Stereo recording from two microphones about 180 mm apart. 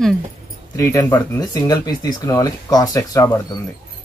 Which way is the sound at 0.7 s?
15° left (ahead or behind).